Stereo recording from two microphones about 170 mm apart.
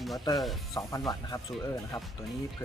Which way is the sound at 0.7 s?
20° left (ahead or behind).